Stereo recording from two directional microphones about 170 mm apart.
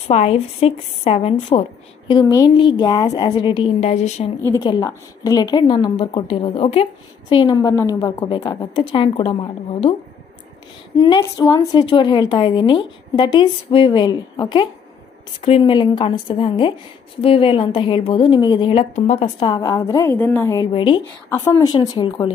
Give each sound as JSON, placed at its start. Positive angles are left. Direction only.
{"t": 0.1, "sound": "a woman's voice", "side_deg": 35}
{"t": 4.6, "sound": "a woman's voice", "side_deg": 25}
{"t": 11.0, "sound": "a woman's voice", "side_deg": 25}
{"t": 18.9, "sound": "a woman's voice", "side_deg": 40}
{"t": 19.2, "sound": "a woman's voice", "side_deg": 25}